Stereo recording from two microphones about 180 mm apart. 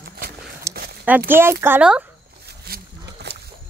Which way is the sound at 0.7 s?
15° right (ahead or behind).